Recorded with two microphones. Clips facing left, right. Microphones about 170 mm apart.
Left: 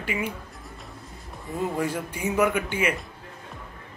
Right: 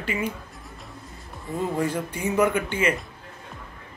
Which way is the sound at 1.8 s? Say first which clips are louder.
Right 2 dB; 10° left (ahead or behind).